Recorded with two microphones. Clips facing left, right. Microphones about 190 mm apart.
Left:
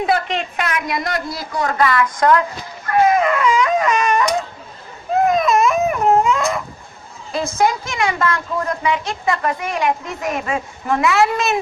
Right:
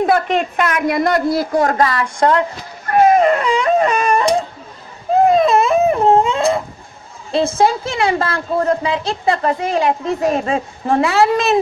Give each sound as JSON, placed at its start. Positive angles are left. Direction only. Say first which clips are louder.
{"t": 0.0, "sound": "speech", "louder": "right 4 dB", "side_deg": -50}
{"t": 2.9, "sound": "a sound", "louder": "right 4 dB", "side_deg": -40}
{"t": 5.1, "sound": "baby cry", "louder": "right 4 dB", "side_deg": -30}
{"t": 7.3, "sound": "a woman's voice", "louder": "right 4 dB", "side_deg": -30}